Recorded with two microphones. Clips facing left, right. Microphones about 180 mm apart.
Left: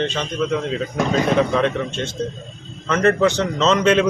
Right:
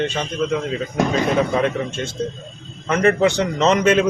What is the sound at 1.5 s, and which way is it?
A man's voice, 10° right (ahead or behind).